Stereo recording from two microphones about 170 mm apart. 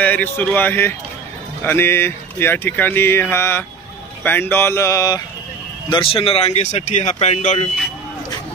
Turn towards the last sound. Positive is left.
turn(degrees=40)  # may be behind; listen again after turning